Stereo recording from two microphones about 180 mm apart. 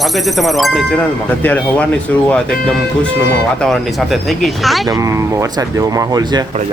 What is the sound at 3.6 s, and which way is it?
Speech, centre (ahead or behind).